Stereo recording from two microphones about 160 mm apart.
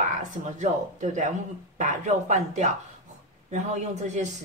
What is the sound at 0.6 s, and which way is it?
Speech, 50° right (ahead or behind).